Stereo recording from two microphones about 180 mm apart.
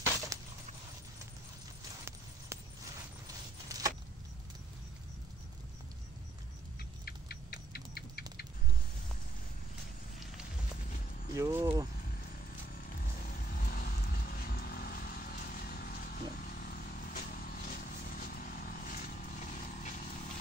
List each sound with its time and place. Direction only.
0.3 s a sound: 20° right (ahead or behind)
2.5 s a sound: 15° right (ahead or behind)
3.6 s keys jangling: 20° right (ahead or behind)
6.8 s rodents: 60° left (ahead or behind)
11.3 s speech: 15° right (ahead or behind)
13.5 s vehicle: 55° left (ahead or behind)